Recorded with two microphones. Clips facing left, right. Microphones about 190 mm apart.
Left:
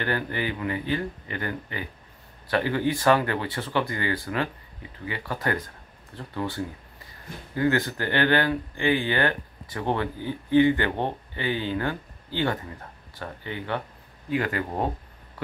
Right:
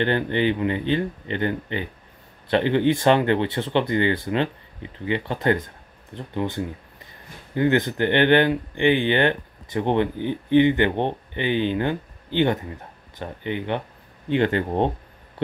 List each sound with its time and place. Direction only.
0.0 s speech: 25° right (ahead or behind)